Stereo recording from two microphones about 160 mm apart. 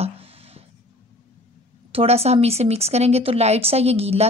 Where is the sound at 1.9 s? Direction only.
40° right (ahead or behind).